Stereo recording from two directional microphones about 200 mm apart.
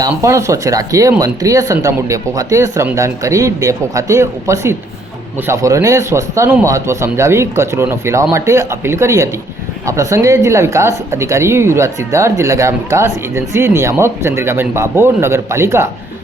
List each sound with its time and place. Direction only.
0.0 s speech: 15° right (ahead or behind)